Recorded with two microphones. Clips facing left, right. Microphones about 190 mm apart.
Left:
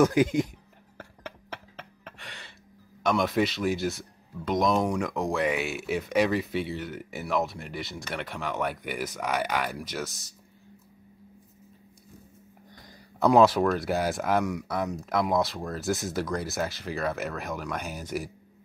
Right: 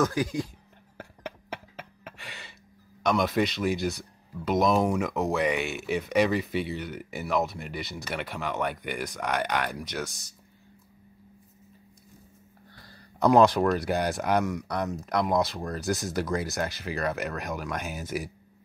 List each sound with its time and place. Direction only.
0.0 s speech: 20° left (ahead or behind)
0.9 s a sound: 10° right (ahead or behind)
3.0 s speech: centre (ahead or behind)
13.2 s speech: centre (ahead or behind)